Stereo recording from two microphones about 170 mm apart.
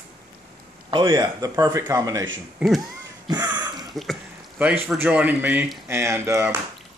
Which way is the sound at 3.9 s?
Centre (ahead or behind).